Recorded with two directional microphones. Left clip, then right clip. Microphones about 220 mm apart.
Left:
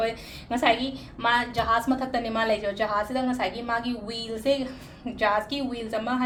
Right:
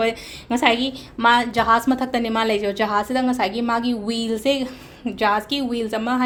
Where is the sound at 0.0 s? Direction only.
45° right (ahead or behind).